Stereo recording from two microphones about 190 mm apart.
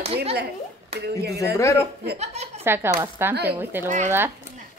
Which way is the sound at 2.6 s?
10° right (ahead or behind).